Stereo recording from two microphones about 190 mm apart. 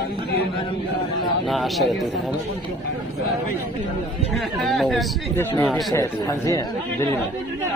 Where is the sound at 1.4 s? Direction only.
Centre (ahead or behind).